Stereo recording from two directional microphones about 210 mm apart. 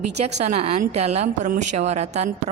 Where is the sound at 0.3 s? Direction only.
30° right (ahead or behind).